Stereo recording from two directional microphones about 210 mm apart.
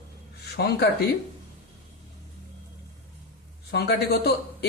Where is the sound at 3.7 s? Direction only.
50° left (ahead or behind).